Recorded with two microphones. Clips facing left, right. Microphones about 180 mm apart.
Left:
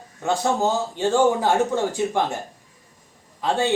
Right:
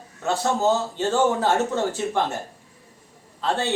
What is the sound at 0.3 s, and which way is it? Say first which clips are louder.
A man's voice: even; 15° left (ahead or behind).